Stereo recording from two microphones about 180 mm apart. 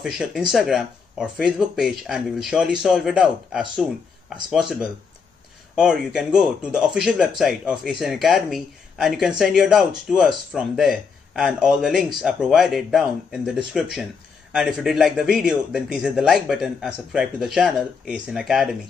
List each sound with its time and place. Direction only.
0.0 s speech: 5° right (ahead or behind)